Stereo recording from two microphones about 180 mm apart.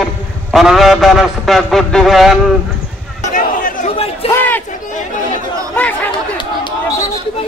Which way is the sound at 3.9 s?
35° left (ahead or behind).